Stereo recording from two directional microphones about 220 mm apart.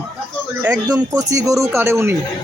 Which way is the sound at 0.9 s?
15° right (ahead or behind).